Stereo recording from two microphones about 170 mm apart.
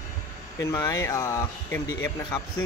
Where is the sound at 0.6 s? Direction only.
20° left (ahead or behind).